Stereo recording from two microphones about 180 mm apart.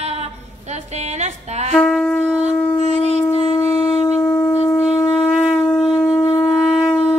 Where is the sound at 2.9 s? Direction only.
35° right (ahead or behind).